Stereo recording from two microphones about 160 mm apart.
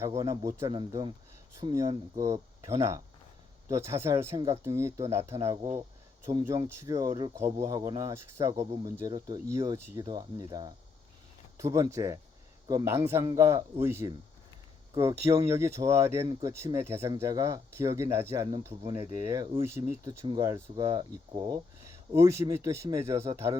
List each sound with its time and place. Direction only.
0.0 s speech: 20° right (ahead or behind)
6.2 s speech: 20° right (ahead or behind)